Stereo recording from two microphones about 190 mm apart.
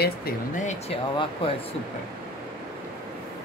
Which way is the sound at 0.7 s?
30° left (ahead or behind).